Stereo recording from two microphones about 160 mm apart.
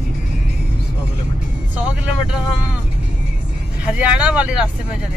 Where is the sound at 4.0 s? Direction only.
5° right (ahead or behind).